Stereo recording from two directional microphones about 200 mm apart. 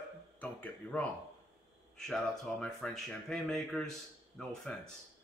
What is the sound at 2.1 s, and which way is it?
Speech, 5° left (ahead or behind).